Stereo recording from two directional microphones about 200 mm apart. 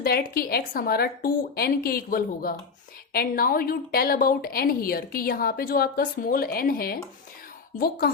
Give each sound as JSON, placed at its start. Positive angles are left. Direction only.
{"t": 0.0, "sound": "a woman's voice", "side_deg": 50}